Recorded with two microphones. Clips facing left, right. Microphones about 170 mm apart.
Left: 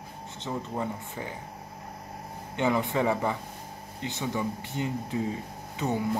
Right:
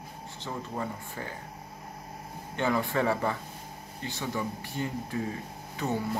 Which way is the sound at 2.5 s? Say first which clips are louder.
Left 2 dB; 20° left (ahead or behind).